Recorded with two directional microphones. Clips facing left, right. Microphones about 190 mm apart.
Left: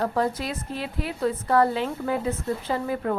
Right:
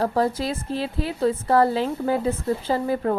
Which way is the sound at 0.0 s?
35° right (ahead or behind).